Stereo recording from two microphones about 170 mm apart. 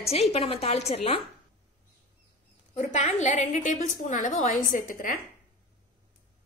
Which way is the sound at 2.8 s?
40° left (ahead or behind).